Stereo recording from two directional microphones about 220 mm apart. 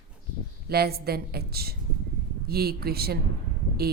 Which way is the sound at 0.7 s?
45° right (ahead or behind).